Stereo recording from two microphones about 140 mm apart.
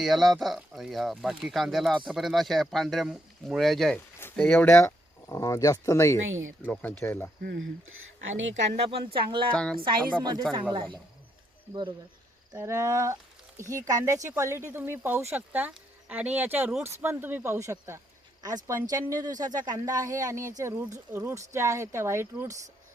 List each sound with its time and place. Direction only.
0.0 s speech: centre (ahead or behind)
8.5 s speech: 45° right (ahead or behind)
9.5 s speech: 5° left (ahead or behind)
10.5 s speech: 35° right (ahead or behind)
12.5 s speech: 20° right (ahead or behind)